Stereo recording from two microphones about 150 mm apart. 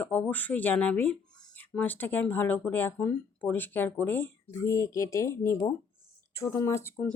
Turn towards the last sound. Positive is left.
turn(degrees=15)  # may be behind; listen again after turning